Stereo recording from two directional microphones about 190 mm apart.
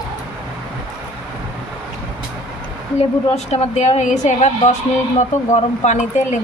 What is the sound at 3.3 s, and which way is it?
Speech, 35° left (ahead or behind).